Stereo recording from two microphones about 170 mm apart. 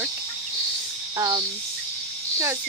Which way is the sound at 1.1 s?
20° right (ahead or behind).